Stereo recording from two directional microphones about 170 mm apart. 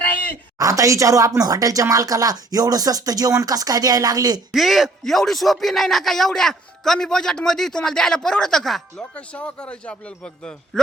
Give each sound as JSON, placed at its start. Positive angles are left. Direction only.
{"t": 0.0, "sound": "a sound", "side_deg": 10}
{"t": 0.6, "sound": "speech", "side_deg": -20}
{"t": 4.5, "sound": "a man's voice", "side_deg": 0}